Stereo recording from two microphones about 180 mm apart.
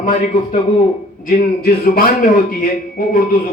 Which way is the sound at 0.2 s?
45° left (ahead or behind).